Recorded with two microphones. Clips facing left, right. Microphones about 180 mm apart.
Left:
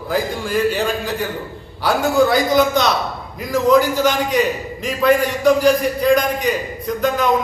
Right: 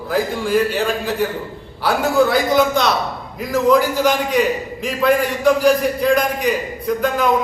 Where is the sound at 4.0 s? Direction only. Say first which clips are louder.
Even; 5° right (ahead or behind).